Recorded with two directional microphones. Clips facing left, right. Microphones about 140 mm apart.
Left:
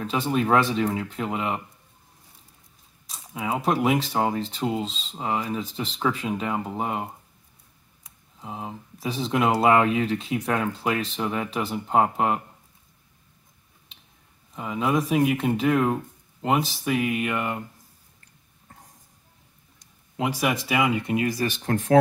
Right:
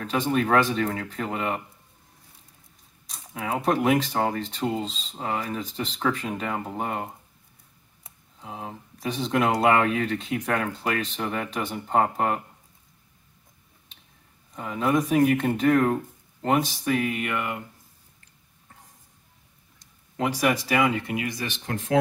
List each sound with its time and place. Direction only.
0.0 s speech: centre (ahead or behind)
3.1 s speech: 5° left (ahead or behind)
8.4 s speech: 5° left (ahead or behind)
14.5 s speech: 10° left (ahead or behind); by 17.6 s 25° left (ahead or behind)
20.2 s speech: 10° left (ahead or behind)
21.1 s speech: 30° left (ahead or behind)